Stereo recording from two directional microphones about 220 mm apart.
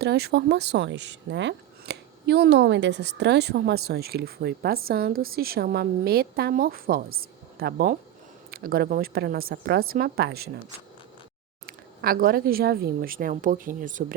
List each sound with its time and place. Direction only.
0.0 s speech: 45° right (ahead or behind)
11.6 s speech: 40° right (ahead or behind)